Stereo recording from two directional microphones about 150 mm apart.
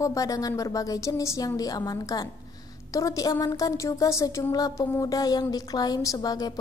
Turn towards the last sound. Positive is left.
turn(degrees=25)  # may be behind; listen again after turning